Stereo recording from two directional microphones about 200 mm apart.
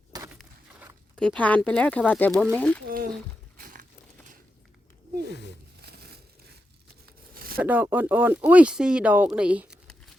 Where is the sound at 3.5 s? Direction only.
45° right (ahead or behind).